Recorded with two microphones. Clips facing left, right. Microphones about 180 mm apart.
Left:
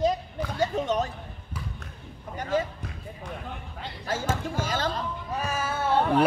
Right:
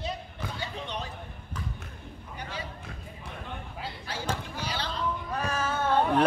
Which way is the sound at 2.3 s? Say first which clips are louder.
Left 12 dB; 45° left (ahead or behind).